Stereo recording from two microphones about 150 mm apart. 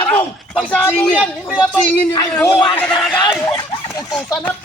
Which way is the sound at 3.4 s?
20° left (ahead or behind).